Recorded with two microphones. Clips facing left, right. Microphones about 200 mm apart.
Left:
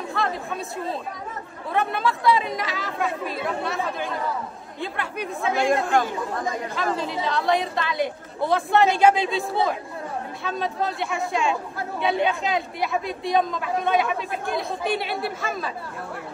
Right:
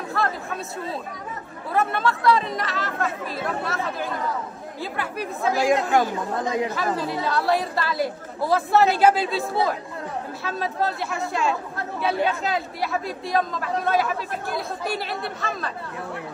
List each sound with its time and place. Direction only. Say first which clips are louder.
0.1 s speech: right 1 dB; centre (ahead or behind)